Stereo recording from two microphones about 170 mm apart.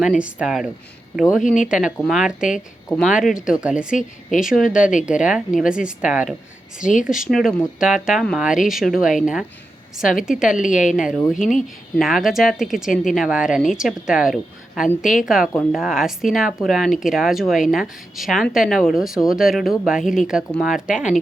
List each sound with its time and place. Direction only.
0.0 s speech: 5° right (ahead or behind)
1.4 s a woman's voice: 50° left (ahead or behind)
1.6 s speech: 5° right (ahead or behind)
6.7 s a woman's voice: 50° left (ahead or behind)
7.3 s speech: centre (ahead or behind)
10.6 s a woman's voice: 50° left (ahead or behind)
10.9 s speech: 5° right (ahead or behind)
11.3 s a woman's voice: 50° left (ahead or behind)
11.9 s speech: centre (ahead or behind)